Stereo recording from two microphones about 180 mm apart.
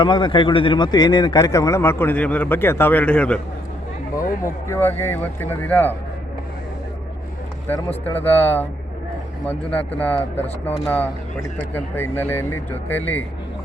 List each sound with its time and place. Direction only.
0.0 s speech: 25° left (ahead or behind); by 3.4 s 5° left (ahead or behind)
4.4 s speech: 10° left (ahead or behind)
8.2 s speech: 10° left (ahead or behind)